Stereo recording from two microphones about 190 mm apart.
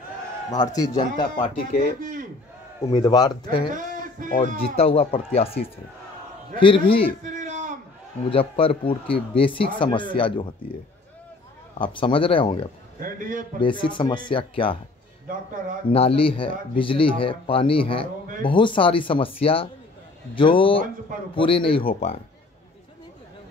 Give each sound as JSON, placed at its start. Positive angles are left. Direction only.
{"t": 0.5, "sound": "speech", "side_deg": 20}
{"t": 1.4, "sound": "speech", "side_deg": 45}
{"t": 2.0, "sound": "speech", "side_deg": -45}
{"t": 2.9, "sound": "speech", "side_deg": 20}
{"t": 3.7, "sound": "a sound", "side_deg": -45}
{"t": 4.4, "sound": "speech", "side_deg": 30}
{"t": 6.6, "sound": "speech", "side_deg": 30}
{"t": 7.2, "sound": "a sound", "side_deg": -40}
{"t": 8.3, "sound": "speech", "side_deg": 30}
{"t": 11.8, "sound": "speech", "side_deg": 25}
{"t": 13.0, "sound": "speech", "side_deg": -45}
{"t": 13.6, "sound": "speech", "side_deg": 25}
{"t": 15.2, "sound": "speech", "side_deg": -45}
{"t": 15.9, "sound": "speech", "side_deg": 30}